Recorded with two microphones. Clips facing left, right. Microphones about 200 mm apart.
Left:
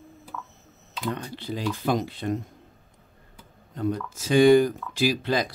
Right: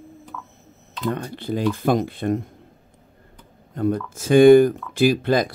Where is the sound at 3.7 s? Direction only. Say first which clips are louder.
Right 5 dB; 55° right (ahead or behind).